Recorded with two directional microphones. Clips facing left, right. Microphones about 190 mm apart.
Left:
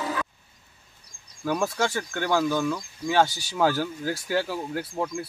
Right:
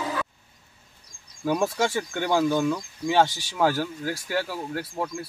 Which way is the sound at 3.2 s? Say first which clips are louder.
Even; centre (ahead or behind).